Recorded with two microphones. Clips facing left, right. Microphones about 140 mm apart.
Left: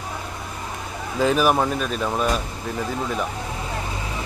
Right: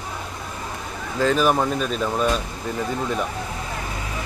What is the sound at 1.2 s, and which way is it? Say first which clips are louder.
Speech: even; 10° left (ahead or behind).